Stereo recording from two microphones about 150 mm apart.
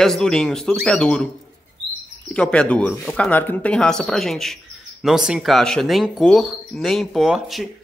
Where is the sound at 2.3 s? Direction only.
5° left (ahead or behind).